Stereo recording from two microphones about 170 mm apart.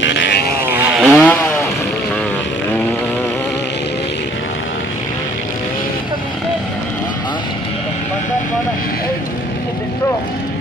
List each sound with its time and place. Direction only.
0.0 s vehicle: 90° left
0.7 s chainsaw: 15° right (ahead or behind)
1.1 s chainsaw: 10° left (ahead or behind)